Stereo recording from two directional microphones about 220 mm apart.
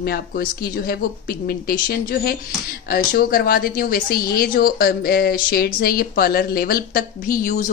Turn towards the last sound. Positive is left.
turn(degrees=40)  # may be behind; listen again after turning